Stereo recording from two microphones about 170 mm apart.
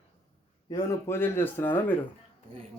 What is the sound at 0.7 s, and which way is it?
Speech, 15° left (ahead or behind).